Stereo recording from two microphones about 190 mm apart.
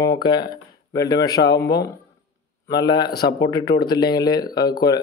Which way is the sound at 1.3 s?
60° left (ahead or behind).